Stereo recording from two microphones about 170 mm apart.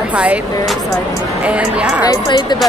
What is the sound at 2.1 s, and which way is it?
Speech, 25° left (ahead or behind).